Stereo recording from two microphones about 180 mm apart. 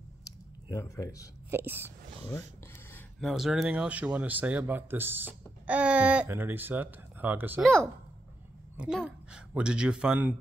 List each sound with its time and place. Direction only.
0.7 s speech: 20° left (ahead or behind)
1.5 s speech: 10° right (ahead or behind)
2.9 s speech: centre (ahead or behind)
8.7 s speech: 5° right (ahead or behind)